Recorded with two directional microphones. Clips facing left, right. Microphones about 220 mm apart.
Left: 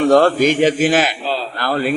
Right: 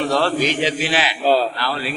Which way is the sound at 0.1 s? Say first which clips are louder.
Left 7 dB; 50° left (ahead or behind).